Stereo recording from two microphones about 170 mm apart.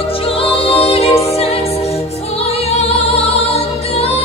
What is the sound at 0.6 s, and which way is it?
Music, 35° left (ahead or behind).